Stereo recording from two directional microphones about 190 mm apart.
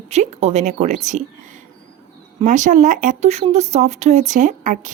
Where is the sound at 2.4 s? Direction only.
40° right (ahead or behind).